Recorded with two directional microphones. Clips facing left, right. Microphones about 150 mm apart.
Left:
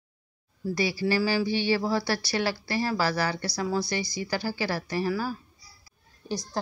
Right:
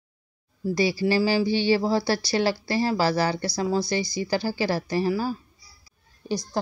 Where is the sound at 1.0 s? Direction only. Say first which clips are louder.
Right 2 dB; 25° right (ahead or behind).